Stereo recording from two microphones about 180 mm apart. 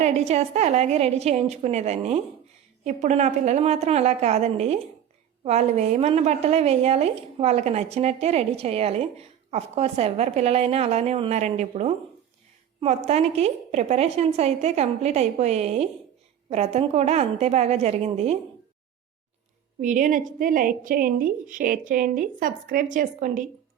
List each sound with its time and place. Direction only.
0.0 s a woman's voice: 35° right (ahead or behind)
19.8 s a woman's voice: 45° right (ahead or behind)